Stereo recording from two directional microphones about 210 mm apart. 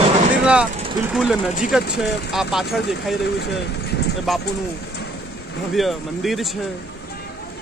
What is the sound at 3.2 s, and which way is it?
Speech, 50° left (ahead or behind).